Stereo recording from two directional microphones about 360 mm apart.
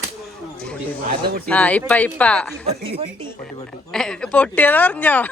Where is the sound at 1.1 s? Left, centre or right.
Right.